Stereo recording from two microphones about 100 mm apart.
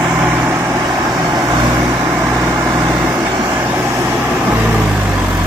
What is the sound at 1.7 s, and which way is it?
Vehicle, 20° right (ahead or behind).